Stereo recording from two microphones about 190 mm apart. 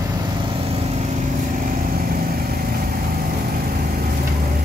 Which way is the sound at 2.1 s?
50° right (ahead or behind).